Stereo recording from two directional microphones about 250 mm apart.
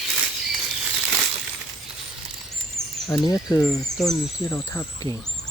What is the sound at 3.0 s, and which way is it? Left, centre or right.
Speech, centre.